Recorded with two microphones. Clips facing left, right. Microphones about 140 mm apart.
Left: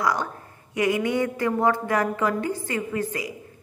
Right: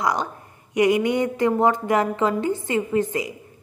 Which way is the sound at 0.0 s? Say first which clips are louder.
Right 1 dB; 20° right (ahead or behind).